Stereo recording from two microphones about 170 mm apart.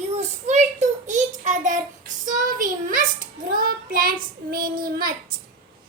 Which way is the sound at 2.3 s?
50° right (ahead or behind).